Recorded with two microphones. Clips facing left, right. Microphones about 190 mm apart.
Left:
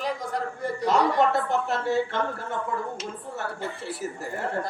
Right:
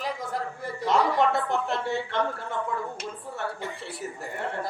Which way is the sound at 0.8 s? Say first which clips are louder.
Left 1 dB; centre (ahead or behind).